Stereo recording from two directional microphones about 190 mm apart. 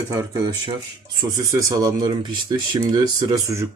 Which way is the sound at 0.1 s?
20° right (ahead or behind).